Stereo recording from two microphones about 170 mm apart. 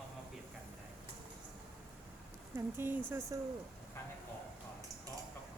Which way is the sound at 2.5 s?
10° right (ahead or behind).